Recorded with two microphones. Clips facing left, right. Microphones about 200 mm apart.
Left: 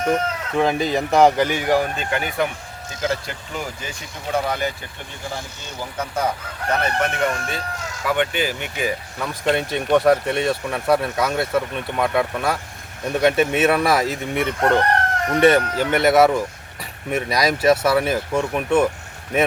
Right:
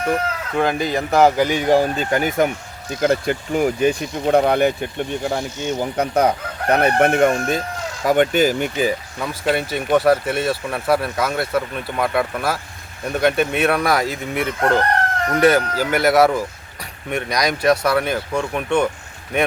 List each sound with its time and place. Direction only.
0.0 s speech: centre (ahead or behind)
1.5 s speech: 20° right (ahead or behind); by 2.5 s 40° right (ahead or behind)
3.0 s speech: 55° right (ahead or behind); by 9.0 s 35° right (ahead or behind)
9.1 s speech: 5° right (ahead or behind)